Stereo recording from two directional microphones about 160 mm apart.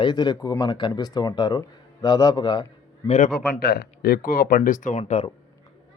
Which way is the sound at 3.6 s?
80° left.